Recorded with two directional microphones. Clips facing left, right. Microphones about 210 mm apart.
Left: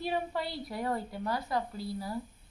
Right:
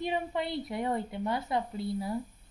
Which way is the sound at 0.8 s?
20° right (ahead or behind).